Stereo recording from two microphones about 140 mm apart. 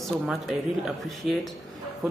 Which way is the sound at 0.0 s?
Centre (ahead or behind).